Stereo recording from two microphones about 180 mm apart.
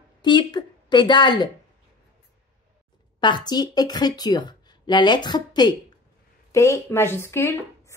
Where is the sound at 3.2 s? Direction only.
25° left (ahead or behind).